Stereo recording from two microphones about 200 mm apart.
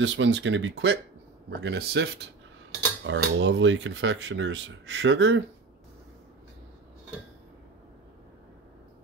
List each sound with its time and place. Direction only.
0.0 s speech: 65° right (ahead or behind)